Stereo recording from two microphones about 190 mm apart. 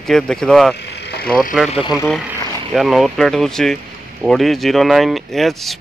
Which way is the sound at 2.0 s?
Centre (ahead or behind).